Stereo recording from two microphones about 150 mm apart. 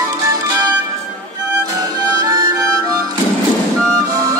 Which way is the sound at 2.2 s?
25° right (ahead or behind).